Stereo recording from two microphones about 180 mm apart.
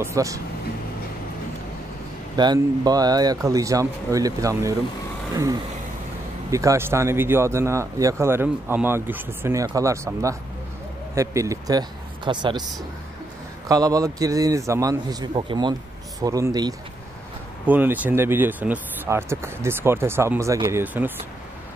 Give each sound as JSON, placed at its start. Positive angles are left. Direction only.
{"t": 0.0, "sound": "speech", "side_deg": -15}
{"t": 2.3, "sound": "speech", "side_deg": -25}
{"t": 13.7, "sound": "speech", "side_deg": -20}
{"t": 17.6, "sound": "speech", "side_deg": -10}